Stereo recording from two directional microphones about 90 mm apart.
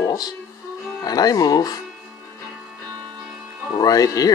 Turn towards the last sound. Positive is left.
turn(degrees=45)  # may be behind; listen again after turning